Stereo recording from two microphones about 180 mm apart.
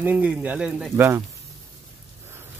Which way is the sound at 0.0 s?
10° right (ahead or behind).